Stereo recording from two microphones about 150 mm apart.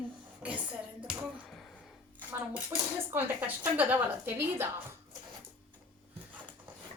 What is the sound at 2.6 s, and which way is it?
Speech, 15° right (ahead or behind).